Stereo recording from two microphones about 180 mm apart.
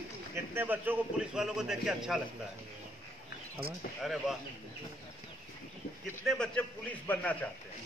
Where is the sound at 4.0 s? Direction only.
Centre (ahead or behind).